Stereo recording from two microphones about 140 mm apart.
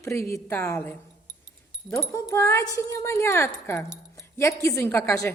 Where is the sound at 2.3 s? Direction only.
20° left (ahead or behind).